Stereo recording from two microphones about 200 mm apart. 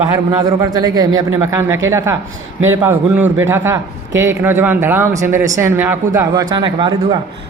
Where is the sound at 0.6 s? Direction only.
20° right (ahead or behind).